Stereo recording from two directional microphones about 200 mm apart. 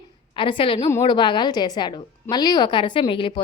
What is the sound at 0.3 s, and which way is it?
A woman's voice, 25° left (ahead or behind).